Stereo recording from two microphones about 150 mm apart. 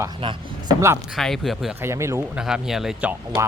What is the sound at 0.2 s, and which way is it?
Speech, 35° right (ahead or behind).